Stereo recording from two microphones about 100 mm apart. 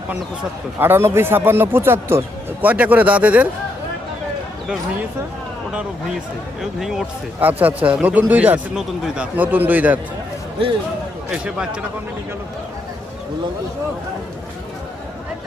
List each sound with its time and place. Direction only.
0.8 s speech: 20° right (ahead or behind)
6.6 s speech: 5° right (ahead or behind)
7.3 s a man's voice: 15° right (ahead or behind)
11.3 s a man's voice: 10° right (ahead or behind)